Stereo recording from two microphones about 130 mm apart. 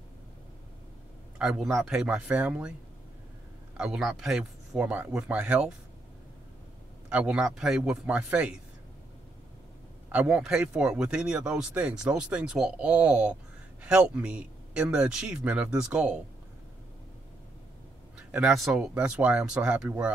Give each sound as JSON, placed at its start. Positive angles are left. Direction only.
{"t": 1.4, "sound": "speech", "side_deg": -5}
{"t": 3.7, "sound": "speech", "side_deg": -5}
{"t": 7.1, "sound": "speech", "side_deg": -10}
{"t": 10.1, "sound": "speech", "side_deg": -5}
{"t": 18.1, "sound": "speech", "side_deg": -5}